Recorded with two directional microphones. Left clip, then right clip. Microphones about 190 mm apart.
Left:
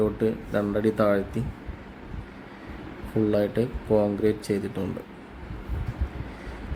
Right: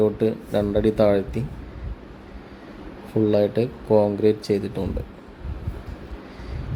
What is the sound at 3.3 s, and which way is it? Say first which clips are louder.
Speech: right 5 dB; 10° right (ahead or behind).